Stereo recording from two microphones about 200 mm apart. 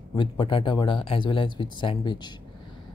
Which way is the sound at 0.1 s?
25° left (ahead or behind).